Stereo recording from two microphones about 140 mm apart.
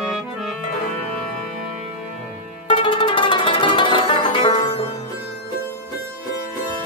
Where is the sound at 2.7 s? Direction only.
40° left (ahead or behind).